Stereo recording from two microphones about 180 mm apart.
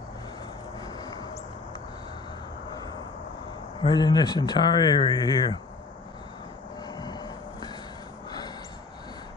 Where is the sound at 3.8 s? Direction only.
25° left (ahead or behind).